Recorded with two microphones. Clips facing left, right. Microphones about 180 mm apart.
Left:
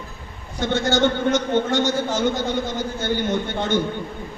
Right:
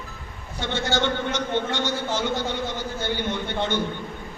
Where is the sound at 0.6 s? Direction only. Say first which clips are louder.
Left 5 dB; 45° left (ahead or behind).